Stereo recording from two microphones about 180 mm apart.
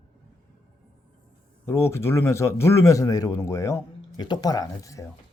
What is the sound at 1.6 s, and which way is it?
A man's voice, 15° left (ahead or behind).